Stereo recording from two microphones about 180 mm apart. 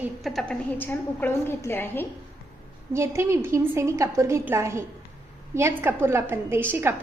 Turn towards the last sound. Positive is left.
turn(degrees=-10)  # may be behind; listen again after turning